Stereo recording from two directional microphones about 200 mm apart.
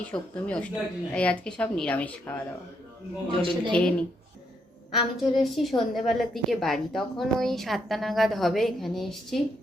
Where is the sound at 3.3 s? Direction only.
25° right (ahead or behind).